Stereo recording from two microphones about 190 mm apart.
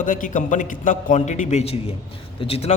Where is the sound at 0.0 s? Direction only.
45° left (ahead or behind).